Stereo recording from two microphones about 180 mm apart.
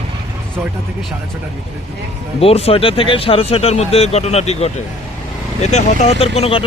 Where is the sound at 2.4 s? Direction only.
35° left (ahead or behind).